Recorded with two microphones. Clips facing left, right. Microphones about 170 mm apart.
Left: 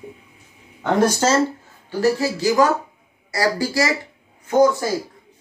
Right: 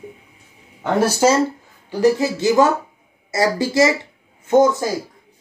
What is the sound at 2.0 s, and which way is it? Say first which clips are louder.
Speech: right 3 dB; 20° right (ahead or behind).